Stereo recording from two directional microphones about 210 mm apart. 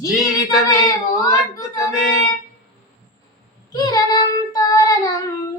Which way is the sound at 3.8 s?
20° left (ahead or behind).